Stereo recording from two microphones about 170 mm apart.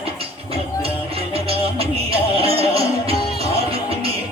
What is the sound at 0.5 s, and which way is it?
Music, 35° right (ahead or behind).